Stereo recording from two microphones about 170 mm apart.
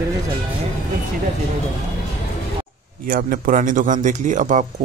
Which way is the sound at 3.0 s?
55° right (ahead or behind).